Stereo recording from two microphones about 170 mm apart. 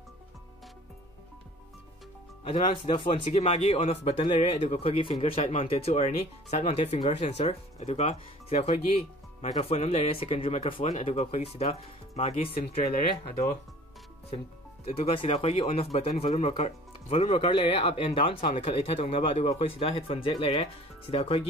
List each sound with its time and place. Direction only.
2.4 s a man's voice: 35° left (ahead or behind)
15.0 s a man's voice: 35° left (ahead or behind)